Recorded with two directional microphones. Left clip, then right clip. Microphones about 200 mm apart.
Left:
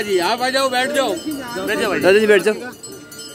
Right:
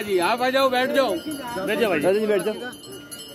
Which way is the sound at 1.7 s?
50° right (ahead or behind).